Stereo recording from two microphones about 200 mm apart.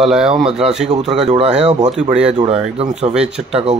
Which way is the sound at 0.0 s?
5° right (ahead or behind).